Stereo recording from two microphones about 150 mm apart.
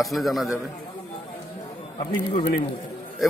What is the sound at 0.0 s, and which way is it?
Speech, centre (ahead or behind).